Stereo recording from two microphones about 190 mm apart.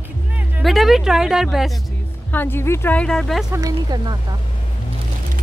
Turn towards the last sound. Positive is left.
turn(degrees=-20)  # may be behind; listen again after turning